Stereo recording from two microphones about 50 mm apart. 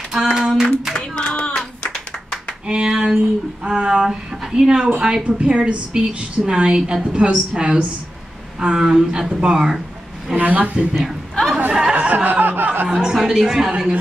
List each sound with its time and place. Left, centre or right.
0.1 s singing: centre
0.9 s a sound: centre
2.6 s a woman's voice: centre
3.9 s a woman's voice: centre
10.3 s speech: right
10.6 s speech: right
11.0 s a man's voice: centre
11.9 s music: right
12.3 s music: right
12.9 s a woman's voice: centre